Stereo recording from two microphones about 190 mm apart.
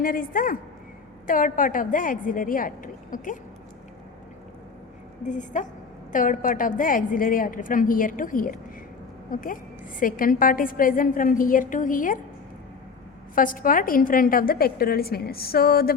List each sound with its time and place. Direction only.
0.0 s a woman's voice: 50° left (ahead or behind)
5.2 s a woman's voice: 40° left (ahead or behind)
13.3 s a woman's voice: 45° left (ahead or behind)